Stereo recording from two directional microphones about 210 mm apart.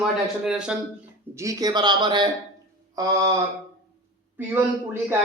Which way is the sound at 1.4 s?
15° right (ahead or behind).